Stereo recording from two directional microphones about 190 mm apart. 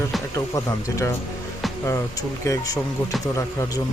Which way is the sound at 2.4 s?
15° left (ahead or behind).